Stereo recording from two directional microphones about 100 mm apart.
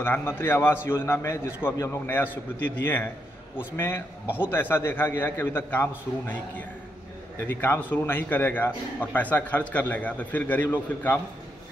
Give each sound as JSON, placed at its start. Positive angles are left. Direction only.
{"t": 0.0, "sound": "a man's voice", "side_deg": 20}